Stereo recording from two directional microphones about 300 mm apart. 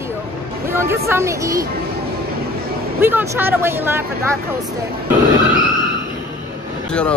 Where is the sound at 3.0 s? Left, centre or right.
Centre.